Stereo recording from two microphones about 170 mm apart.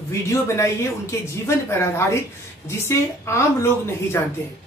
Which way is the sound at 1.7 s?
15° left (ahead or behind).